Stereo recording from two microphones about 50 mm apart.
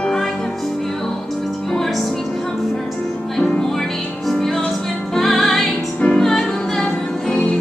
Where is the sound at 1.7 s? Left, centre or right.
Centre.